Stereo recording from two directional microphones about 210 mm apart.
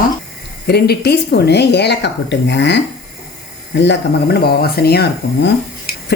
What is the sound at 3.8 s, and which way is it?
Speech, 55° left (ahead or behind).